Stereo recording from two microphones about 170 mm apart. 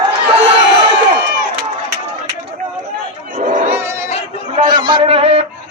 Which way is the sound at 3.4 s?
50° right (ahead or behind).